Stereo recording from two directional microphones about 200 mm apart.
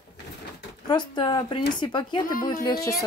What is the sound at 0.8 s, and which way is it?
Speech, 20° left (ahead or behind).